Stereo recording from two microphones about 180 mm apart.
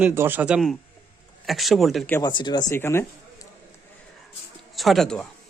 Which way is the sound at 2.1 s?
20° left (ahead or behind).